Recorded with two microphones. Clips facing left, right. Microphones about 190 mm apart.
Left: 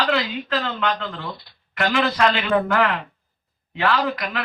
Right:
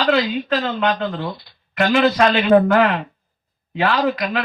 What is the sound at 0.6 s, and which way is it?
Speech, 25° right (ahead or behind).